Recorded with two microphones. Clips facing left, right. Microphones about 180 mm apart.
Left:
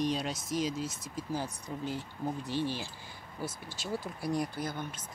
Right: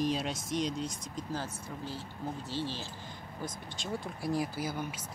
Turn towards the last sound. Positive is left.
turn(degrees=-10)  # may be behind; listen again after turning